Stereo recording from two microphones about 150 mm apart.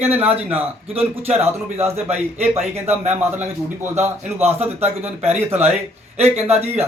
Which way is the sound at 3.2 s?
15° right (ahead or behind).